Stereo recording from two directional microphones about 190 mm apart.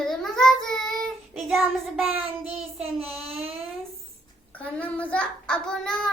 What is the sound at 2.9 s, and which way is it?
Child singing, centre (ahead or behind).